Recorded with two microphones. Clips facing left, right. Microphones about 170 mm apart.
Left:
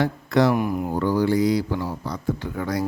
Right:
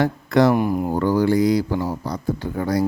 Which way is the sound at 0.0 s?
50° right (ahead or behind).